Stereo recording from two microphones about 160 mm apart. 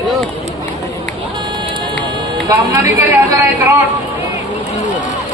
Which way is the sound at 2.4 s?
20° right (ahead or behind).